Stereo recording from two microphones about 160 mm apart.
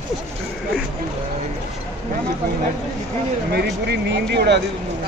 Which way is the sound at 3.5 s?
90° right.